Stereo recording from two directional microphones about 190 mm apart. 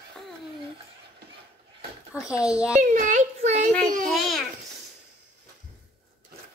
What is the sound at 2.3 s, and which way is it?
Speech, 5° right (ahead or behind).